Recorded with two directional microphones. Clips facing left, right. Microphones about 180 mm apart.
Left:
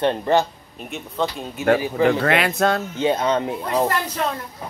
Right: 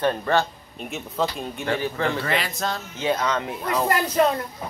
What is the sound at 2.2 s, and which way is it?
Speech, 60° left (ahead or behind).